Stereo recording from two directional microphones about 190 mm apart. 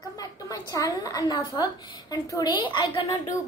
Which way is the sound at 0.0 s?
20° left (ahead or behind).